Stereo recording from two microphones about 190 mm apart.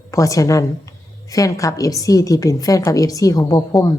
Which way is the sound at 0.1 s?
15° left (ahead or behind).